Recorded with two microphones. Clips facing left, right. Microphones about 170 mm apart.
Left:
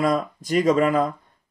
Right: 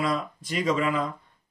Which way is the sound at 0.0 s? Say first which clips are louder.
Left 6 dB; 45° left (ahead or behind).